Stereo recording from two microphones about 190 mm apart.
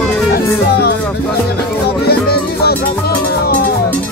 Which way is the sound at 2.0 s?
55° left (ahead or behind).